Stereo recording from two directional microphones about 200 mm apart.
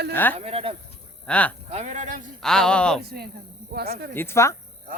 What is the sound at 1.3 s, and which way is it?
Speech, 5° left (ahead or behind).